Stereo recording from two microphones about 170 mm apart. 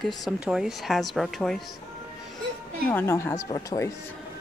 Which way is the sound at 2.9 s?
15° left (ahead or behind).